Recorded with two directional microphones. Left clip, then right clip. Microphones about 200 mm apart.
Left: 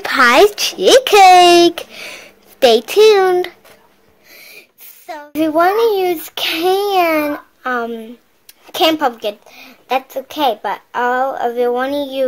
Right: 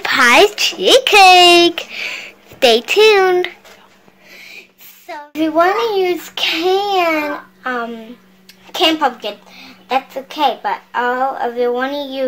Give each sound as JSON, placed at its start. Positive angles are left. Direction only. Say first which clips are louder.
{"t": 0.0, "sound": "speech", "louder": "even", "side_deg": 25}
{"t": 4.3, "sound": "a child's voice", "louder": "right 3 dB", "side_deg": 50}